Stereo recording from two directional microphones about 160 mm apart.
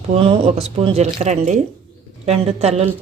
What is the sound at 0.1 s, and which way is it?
Speech, 40° right (ahead or behind).